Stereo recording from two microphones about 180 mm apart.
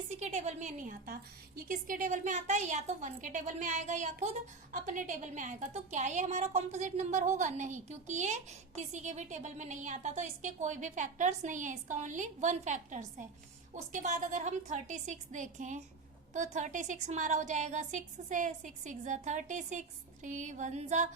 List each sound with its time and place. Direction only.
0.1 s a woman's voice: 40° right (ahead or behind)